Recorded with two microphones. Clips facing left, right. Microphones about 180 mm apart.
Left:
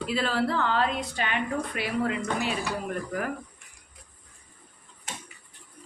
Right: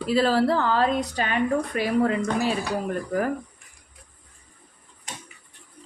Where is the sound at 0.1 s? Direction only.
40° right (ahead or behind).